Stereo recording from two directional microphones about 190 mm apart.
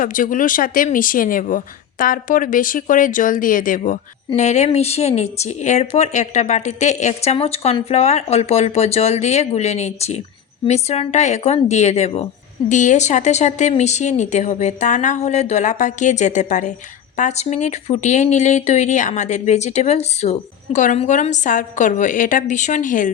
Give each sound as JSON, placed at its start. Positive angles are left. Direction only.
{"t": 0.0, "sound": "speech", "side_deg": 45}